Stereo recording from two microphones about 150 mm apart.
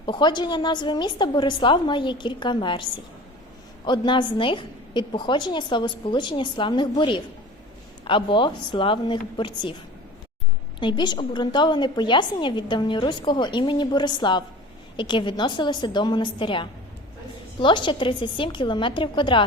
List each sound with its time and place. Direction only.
0.0 s a woman's voice: 30° left (ahead or behind)
3.8 s a woman's voice: 30° left (ahead or behind)
10.8 s a woman's voice: 30° left (ahead or behind)